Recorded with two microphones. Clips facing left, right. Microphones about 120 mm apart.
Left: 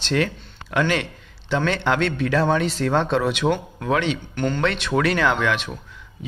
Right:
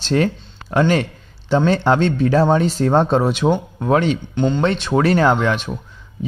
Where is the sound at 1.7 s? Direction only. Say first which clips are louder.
Right 5 dB; 35° right (ahead or behind).